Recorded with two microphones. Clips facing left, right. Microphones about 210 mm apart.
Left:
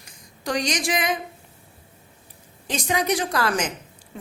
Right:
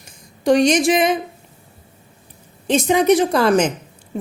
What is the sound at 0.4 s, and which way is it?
Speech, 25° right (ahead or behind).